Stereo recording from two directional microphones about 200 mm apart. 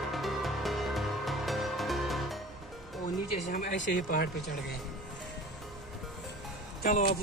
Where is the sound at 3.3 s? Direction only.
35° left (ahead or behind).